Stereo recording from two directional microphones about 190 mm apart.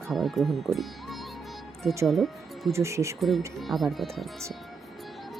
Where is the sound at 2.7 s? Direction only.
15° right (ahead or behind).